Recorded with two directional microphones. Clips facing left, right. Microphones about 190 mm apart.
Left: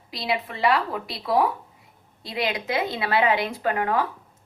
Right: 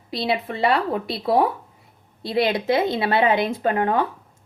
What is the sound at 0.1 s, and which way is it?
A woman's voice, 25° right (ahead or behind).